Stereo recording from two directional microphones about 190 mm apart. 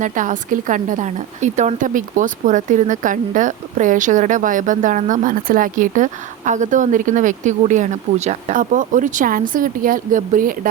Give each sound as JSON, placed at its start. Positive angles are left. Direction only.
{"t": 0.0, "sound": "a woman's voice", "side_deg": -40}